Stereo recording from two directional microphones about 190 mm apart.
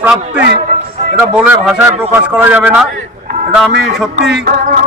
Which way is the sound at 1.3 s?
5° right (ahead or behind).